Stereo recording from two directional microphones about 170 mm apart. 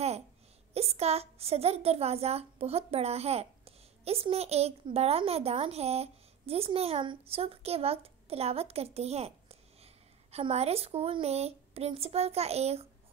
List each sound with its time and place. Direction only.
0.7 s a woman's voice: 35° right (ahead or behind)